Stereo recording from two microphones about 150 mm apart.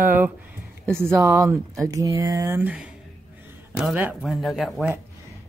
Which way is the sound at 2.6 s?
10° right (ahead or behind).